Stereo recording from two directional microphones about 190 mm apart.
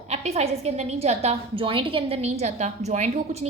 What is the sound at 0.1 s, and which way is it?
A woman's voice, 35° right (ahead or behind).